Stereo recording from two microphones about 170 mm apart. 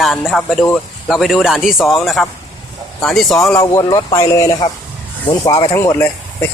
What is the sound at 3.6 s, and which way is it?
Speech, 20° left (ahead or behind).